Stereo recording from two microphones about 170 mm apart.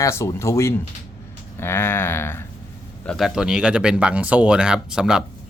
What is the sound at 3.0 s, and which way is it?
Speech, centre (ahead or behind).